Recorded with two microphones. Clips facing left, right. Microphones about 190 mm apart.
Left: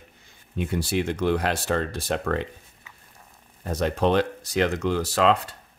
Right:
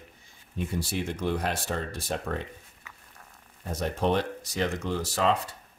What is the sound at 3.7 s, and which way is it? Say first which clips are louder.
Speech: left 5 dB; 85° left.